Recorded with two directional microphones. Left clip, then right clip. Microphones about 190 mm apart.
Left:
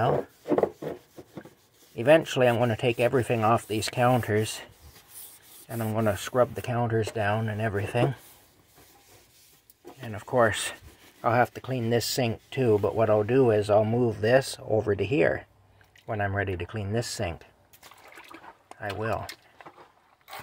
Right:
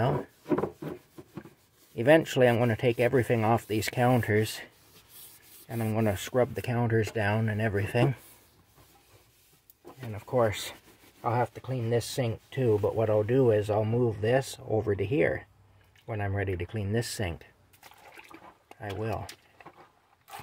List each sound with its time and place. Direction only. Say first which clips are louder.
2.0 s speech: left 1 dB; 20° right (ahead or behind)
5.7 s speech: left 2 dB; 15° right (ahead or behind)
9.9 s speech: left 3 dB; 5° left (ahead or behind); by 17.5 s 20° right (ahead or behind)
18.7 s speech: left 4 dB; 10° right (ahead or behind)